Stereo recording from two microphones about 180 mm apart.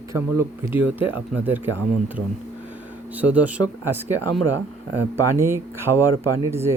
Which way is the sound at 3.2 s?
10° right (ahead or behind).